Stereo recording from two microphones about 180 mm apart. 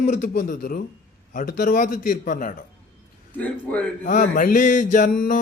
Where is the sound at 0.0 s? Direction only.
45° left (ahead or behind).